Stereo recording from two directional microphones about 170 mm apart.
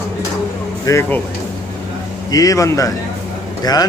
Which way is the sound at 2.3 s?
20° left (ahead or behind).